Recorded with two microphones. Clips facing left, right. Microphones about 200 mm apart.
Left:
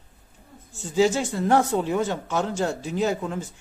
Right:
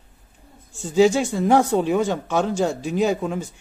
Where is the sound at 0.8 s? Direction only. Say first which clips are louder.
Right 4 dB; 15° right (ahead or behind).